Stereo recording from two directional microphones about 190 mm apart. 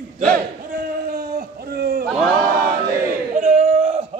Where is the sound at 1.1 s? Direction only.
55° right (ahead or behind).